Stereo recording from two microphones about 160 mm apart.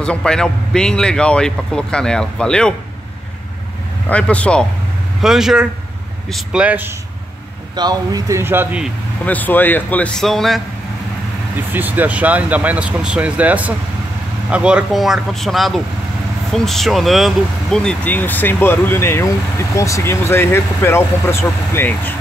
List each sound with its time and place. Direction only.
0.0 s speech: 5° left (ahead or behind)
4.1 s speech: 10° left (ahead or behind); by 7.0 s 10° right (ahead or behind)
7.7 s speech: 25° right (ahead or behind)
9.2 s speech: 10° left (ahead or behind)
11.7 s speech: 10° right (ahead or behind); by 22.1 s 15° left (ahead or behind)